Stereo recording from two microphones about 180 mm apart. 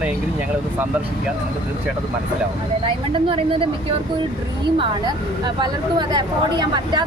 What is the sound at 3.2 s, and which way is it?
Speech, 30° right (ahead or behind).